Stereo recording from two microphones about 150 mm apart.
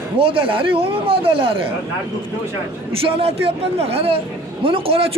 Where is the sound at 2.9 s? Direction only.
40° right (ahead or behind).